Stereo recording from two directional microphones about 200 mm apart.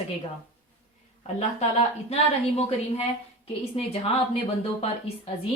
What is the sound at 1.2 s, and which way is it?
Speech, 30° left (ahead or behind).